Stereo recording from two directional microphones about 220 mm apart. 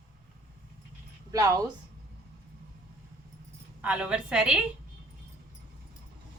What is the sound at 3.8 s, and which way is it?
Speech, 5° right (ahead or behind).